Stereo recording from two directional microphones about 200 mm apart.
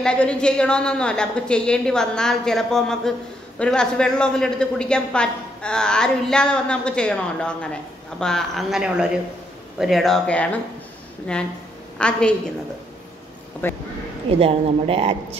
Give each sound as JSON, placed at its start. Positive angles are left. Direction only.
{"t": 0.0, "sound": "a woman's voice", "side_deg": 5}
{"t": 12.0, "sound": "a woman's voice", "side_deg": 5}
{"t": 13.6, "sound": "speech", "side_deg": 10}
{"t": 14.4, "sound": "speech", "side_deg": -30}